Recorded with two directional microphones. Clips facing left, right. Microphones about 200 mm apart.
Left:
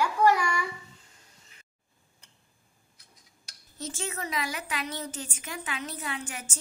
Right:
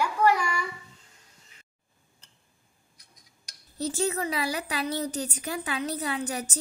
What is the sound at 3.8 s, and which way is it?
A woman's voice, 35° right (ahead or behind).